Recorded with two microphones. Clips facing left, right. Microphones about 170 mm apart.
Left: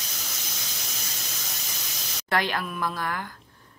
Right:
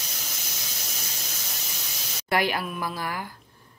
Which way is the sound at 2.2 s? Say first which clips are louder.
Right 2 dB; 10° right (ahead or behind).